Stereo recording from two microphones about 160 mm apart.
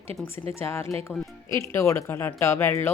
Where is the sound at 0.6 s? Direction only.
15° left (ahead or behind).